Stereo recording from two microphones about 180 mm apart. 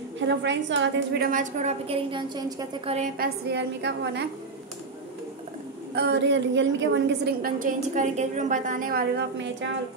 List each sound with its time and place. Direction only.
0.3 s a woman's voice: 80° right; by 3.1 s 35° right (ahead or behind)
3.2 s a woman's voice: 65° right (ahead or behind)
5.9 s a woman's voice: 75° right (ahead or behind); by 9.2 s 55° right (ahead or behind)